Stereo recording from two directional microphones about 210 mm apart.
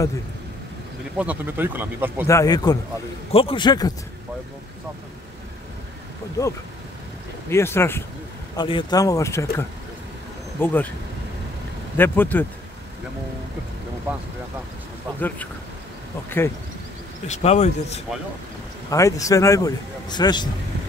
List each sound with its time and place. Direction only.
1.1 s speech: 5° right (ahead or behind)
2.2 s a man's voice: 15° left (ahead or behind)
6.4 s a man's voice: 15° left (ahead or behind)
12.0 s a man's voice: 10° left (ahead or behind)
15.1 s a man's voice: 10° left (ahead or behind)
17.3 s speech: 30° left (ahead or behind)
18.9 s a man's voice: 15° left (ahead or behind)